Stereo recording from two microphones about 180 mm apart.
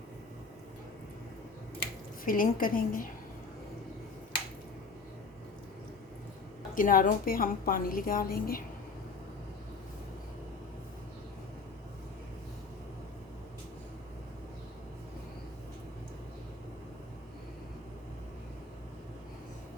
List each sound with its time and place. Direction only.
2.2 s a woman's voice: 50° left (ahead or behind)
6.7 s a woman's voice: 50° left (ahead or behind)